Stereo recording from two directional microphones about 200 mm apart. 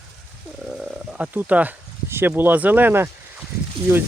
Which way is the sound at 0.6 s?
5° right (ahead or behind).